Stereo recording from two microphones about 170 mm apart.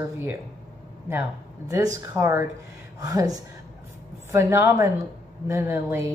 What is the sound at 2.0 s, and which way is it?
A woman's voice, 15° right (ahead or behind).